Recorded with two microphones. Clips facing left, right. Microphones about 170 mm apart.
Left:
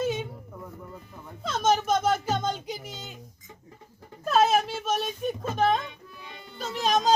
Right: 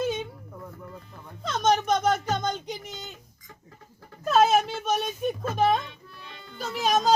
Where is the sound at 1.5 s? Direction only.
5° left (ahead or behind).